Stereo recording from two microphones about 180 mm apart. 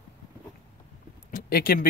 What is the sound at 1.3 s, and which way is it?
Speech, 55° left (ahead or behind).